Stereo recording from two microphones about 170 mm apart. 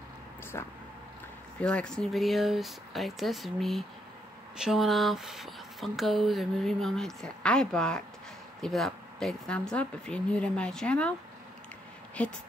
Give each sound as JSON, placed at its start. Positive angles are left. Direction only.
{"t": 0.5, "sound": "speech", "side_deg": 15}
{"t": 1.6, "sound": "speech", "side_deg": 5}
{"t": 12.2, "sound": "speech", "side_deg": 5}